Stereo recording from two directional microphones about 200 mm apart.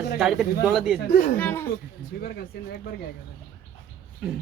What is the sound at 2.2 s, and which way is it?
Speech, 50° left (ahead or behind).